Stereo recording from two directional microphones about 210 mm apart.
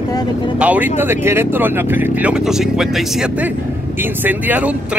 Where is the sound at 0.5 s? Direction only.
5° right (ahead or behind).